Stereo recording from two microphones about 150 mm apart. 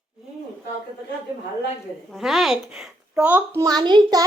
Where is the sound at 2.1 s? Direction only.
Centre (ahead or behind).